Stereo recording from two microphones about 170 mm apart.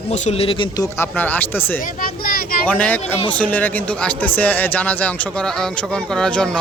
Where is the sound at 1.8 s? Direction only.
60° left (ahead or behind).